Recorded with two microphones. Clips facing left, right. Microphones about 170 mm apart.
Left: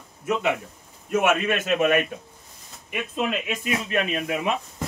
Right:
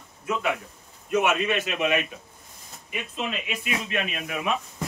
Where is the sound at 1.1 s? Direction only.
50° left (ahead or behind).